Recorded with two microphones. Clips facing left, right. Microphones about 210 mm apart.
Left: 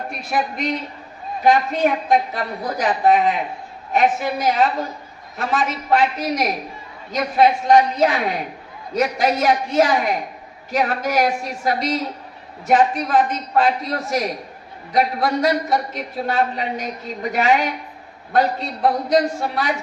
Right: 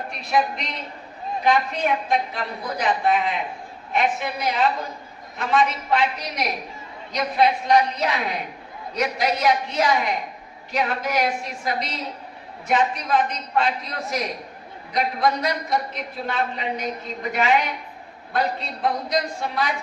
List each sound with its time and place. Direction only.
0.3 s a woman's voice: 45° left (ahead or behind)